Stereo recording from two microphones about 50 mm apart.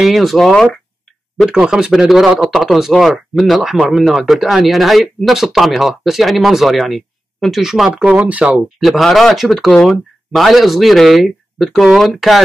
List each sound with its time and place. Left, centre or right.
0.0 s speech: centre
1.5 s speech: centre
7.9 s speech: right
8.7 s speech: centre